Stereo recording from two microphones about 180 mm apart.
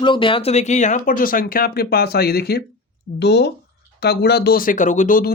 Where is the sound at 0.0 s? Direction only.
25° left (ahead or behind).